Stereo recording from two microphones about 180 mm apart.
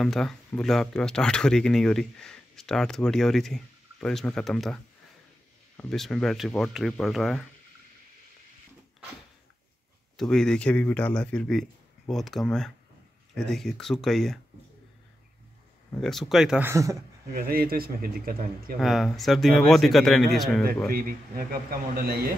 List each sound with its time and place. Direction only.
0.0 s speech: 5° left (ahead or behind)
5.8 s speech: centre (ahead or behind)
10.1 s speech: 5° left (ahead or behind)
16.0 s speech: centre (ahead or behind); by 16.9 s 15° right (ahead or behind)
17.3 s speech: 55° right (ahead or behind)
18.8 s speech: centre (ahead or behind)
20.9 s speech: 55° right (ahead or behind)